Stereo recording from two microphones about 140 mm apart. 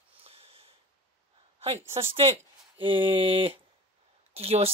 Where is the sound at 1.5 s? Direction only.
45° right (ahead or behind).